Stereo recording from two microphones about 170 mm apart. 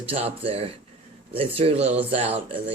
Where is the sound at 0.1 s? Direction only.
35° right (ahead or behind).